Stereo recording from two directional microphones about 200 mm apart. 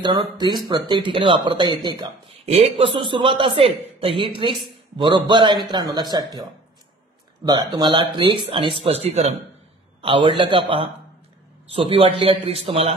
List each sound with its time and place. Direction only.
0.0 s speech: 20° right (ahead or behind)
7.4 s speech: 20° right (ahead or behind)